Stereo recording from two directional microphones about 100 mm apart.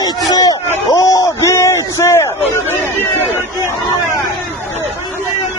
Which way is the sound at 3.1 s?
25° right (ahead or behind).